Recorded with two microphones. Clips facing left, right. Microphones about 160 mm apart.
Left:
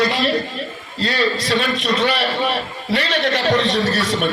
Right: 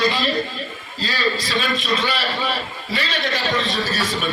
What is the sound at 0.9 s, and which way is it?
A man's voice, 65° left (ahead or behind).